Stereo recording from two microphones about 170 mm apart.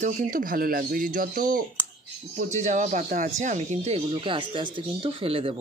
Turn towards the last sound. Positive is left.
turn(degrees=-35)  # may be behind; listen again after turning